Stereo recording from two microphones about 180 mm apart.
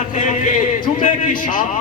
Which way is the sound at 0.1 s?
45° left (ahead or behind).